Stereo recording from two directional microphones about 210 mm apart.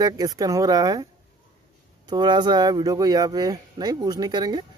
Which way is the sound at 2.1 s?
20° right (ahead or behind).